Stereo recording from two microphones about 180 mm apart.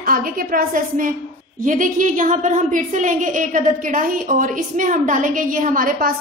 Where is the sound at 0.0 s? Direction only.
50° right (ahead or behind).